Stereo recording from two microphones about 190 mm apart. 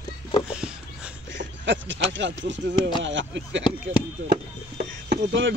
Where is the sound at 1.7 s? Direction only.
75° right (ahead or behind).